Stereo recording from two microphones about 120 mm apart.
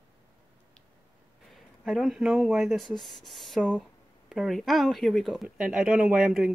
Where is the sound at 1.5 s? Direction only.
Centre (ahead or behind).